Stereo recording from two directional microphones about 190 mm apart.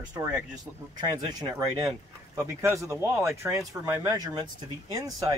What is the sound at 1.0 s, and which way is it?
Speech, 20° right (ahead or behind).